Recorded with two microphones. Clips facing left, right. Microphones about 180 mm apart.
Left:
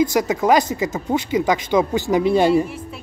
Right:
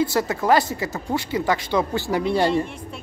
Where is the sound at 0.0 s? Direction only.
15° left (ahead or behind).